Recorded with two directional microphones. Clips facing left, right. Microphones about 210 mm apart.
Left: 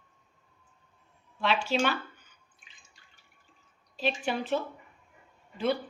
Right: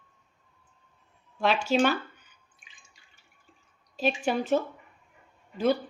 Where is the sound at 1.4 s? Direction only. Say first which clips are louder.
Right 4 dB; 45° right (ahead or behind).